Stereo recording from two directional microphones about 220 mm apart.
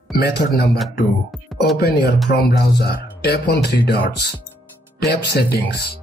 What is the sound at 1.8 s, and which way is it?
Speech, 45° left (ahead or behind).